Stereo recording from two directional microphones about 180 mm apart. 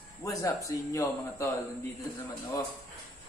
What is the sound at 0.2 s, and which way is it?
A man's voice, 20° left (ahead or behind).